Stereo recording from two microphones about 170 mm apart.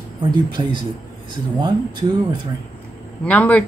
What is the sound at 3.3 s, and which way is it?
Speech, 10° left (ahead or behind).